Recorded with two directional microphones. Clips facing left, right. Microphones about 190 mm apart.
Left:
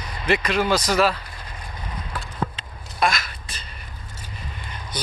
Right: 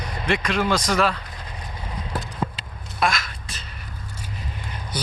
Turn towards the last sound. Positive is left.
turn(degrees=-10)  # may be behind; listen again after turning